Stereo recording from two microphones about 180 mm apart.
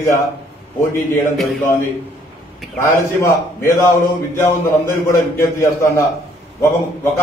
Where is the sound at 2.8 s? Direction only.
15° left (ahead or behind).